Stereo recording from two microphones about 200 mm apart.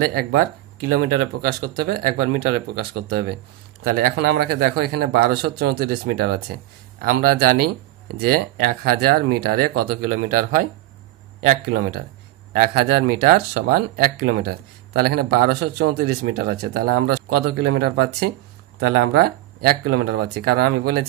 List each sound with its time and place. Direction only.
0.0 s speech: 50° right (ahead or behind)